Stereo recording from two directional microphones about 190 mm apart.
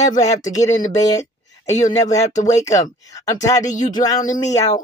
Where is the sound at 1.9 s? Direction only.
15° left (ahead or behind).